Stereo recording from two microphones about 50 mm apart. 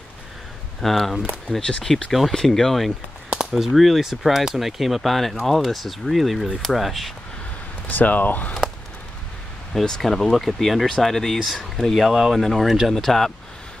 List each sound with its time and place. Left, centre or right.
0.7 s speech: centre
1.6 s speech: left
2.0 s speech: centre
7.9 s speech: left
9.8 s speech: centre
12.1 s speech: centre
12.4 s speech: centre
12.6 s speech: centre
12.9 s speech: centre